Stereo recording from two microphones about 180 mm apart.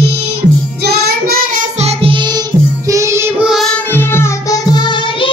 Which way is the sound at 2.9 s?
15° right (ahead or behind).